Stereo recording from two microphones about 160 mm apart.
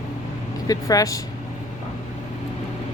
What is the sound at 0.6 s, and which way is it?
Speech, 20° left (ahead or behind).